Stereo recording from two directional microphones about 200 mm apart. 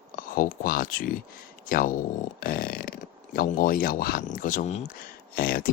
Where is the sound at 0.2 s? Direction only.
45° left (ahead or behind).